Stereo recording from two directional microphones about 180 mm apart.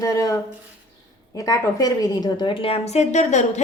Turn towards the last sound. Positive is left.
turn(degrees=40)  # may be behind; listen again after turning